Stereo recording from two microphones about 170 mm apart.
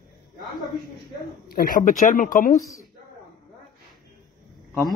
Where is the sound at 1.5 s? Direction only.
55° left (ahead or behind).